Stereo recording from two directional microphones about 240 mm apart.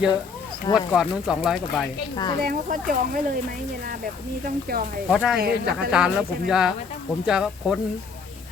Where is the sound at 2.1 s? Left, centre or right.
Centre.